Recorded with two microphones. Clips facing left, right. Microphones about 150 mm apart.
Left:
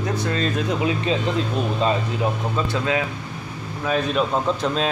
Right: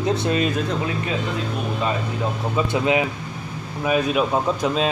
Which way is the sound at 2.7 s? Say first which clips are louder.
Right 3 dB; 20° right (ahead or behind).